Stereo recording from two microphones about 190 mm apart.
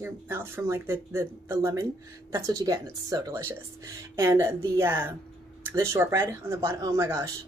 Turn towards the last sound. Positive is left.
turn(degrees=-15)  # may be behind; listen again after turning